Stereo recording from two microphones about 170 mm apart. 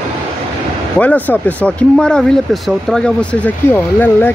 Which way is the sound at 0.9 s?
10° left (ahead or behind).